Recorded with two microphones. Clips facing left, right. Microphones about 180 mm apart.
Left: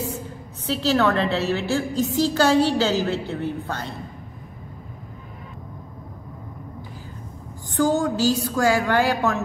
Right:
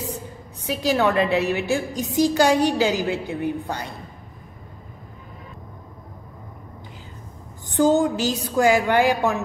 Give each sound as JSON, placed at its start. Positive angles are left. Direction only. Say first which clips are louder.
{"t": 0.7, "sound": "a woman's voice", "louder": "even", "side_deg": -15}
{"t": 7.7, "sound": "a woman's voice", "louder": "right 3 dB", "side_deg": -20}